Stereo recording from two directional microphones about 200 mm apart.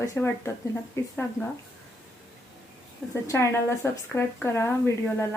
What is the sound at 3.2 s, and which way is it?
Speech, 15° left (ahead or behind).